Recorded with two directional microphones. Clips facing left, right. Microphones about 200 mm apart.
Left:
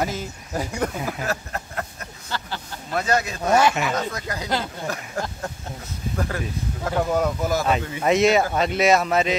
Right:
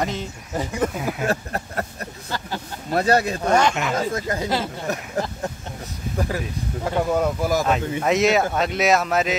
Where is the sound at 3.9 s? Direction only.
25° right (ahead or behind).